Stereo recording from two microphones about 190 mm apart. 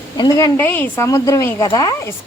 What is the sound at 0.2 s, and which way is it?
Speech, 20° left (ahead or behind).